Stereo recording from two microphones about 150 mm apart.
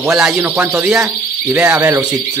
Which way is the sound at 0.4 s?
15° right (ahead or behind).